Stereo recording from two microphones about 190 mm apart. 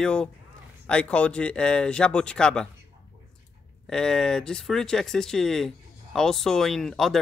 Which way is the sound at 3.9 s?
5° left (ahead or behind).